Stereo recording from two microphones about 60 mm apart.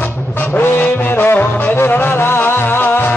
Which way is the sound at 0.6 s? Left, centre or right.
Left.